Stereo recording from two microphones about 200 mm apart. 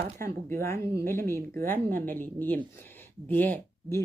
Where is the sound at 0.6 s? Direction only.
15° left (ahead or behind).